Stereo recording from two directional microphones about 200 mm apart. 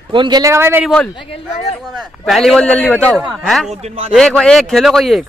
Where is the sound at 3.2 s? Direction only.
5° right (ahead or behind).